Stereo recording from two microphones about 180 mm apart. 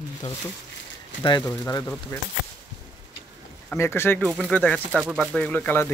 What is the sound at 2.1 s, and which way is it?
Speech, 15° left (ahead or behind).